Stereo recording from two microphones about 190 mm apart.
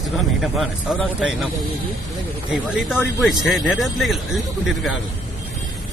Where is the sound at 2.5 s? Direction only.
Centre (ahead or behind).